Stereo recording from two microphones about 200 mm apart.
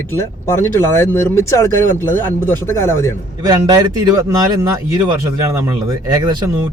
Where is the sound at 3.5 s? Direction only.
20° right (ahead or behind).